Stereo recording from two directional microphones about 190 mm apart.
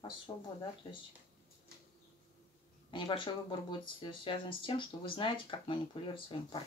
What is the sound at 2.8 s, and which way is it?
Speech, 25° left (ahead or behind).